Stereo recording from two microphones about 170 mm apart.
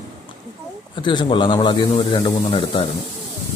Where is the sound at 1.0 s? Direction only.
25° left (ahead or behind).